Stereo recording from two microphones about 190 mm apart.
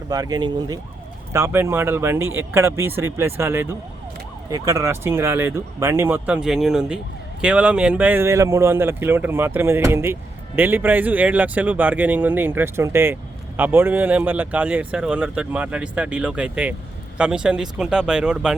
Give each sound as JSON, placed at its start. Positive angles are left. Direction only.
{"t": 0.1, "sound": "speech", "side_deg": -20}